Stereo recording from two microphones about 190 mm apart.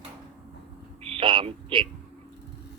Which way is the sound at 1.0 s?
30° right (ahead or behind).